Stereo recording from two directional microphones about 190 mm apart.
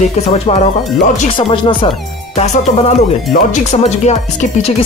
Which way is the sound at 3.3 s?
50° left (ahead or behind).